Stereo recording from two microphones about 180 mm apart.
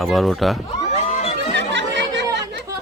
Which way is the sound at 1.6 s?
75° right (ahead or behind).